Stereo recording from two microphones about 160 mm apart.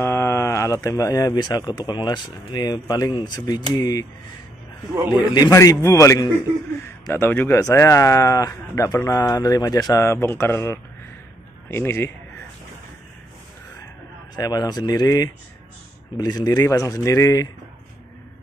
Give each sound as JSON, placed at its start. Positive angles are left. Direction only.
{"t": 0.0, "sound": "speech", "side_deg": 15}
{"t": 4.9, "sound": "a man's voice", "side_deg": -10}
{"t": 5.3, "sound": "speech", "side_deg": 25}
{"t": 14.3, "sound": "speech", "side_deg": 25}